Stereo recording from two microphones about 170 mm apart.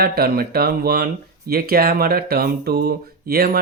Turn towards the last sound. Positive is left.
turn(degrees=-60)  # may be behind; listen again after turning